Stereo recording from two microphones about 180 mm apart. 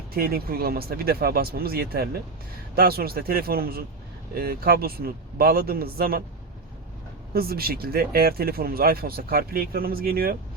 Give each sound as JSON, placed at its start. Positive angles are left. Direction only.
{"t": 0.1, "sound": "speech", "side_deg": -55}
{"t": 7.3, "sound": "speech", "side_deg": -60}